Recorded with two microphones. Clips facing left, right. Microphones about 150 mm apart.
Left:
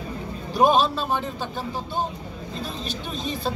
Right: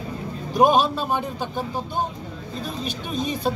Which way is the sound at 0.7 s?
10° right (ahead or behind).